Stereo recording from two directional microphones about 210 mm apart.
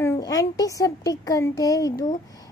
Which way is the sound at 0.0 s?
15° left (ahead or behind).